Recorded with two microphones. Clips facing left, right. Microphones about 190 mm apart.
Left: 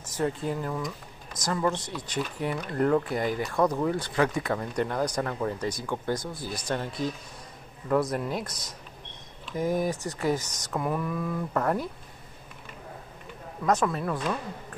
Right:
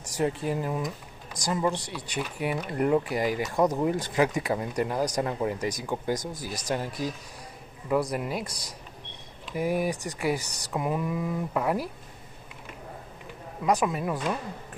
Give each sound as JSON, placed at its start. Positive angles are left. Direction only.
{"t": 0.0, "sound": "speech", "side_deg": -15}
{"t": 13.6, "sound": "speech", "side_deg": -15}